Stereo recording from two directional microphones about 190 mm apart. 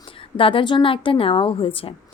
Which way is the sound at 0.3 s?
25° left (ahead or behind).